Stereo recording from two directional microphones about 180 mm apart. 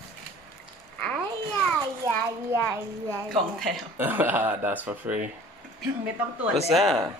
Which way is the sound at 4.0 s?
10° right (ahead or behind).